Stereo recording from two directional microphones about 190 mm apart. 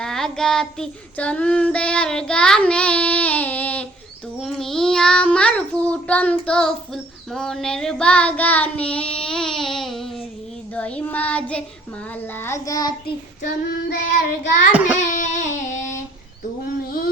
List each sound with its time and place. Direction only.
0.0 s child singing: 5° left (ahead or behind); by 12.9 s 20° left (ahead or behind)
13.4 s child singing: 50° left (ahead or behind)
14.7 s child singing: 10° right (ahead or behind)
14.9 s a sound: 40° left (ahead or behind)